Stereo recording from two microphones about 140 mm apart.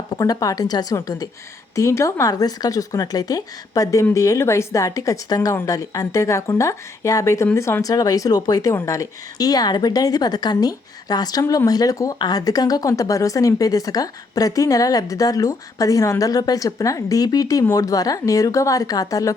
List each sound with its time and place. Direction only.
0.2 s speech: 25° left (ahead or behind)